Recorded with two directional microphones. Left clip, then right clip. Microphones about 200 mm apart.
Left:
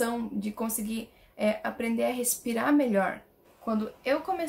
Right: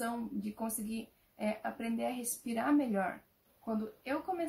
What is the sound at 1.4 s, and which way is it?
A woman's voice, 5° left (ahead or behind).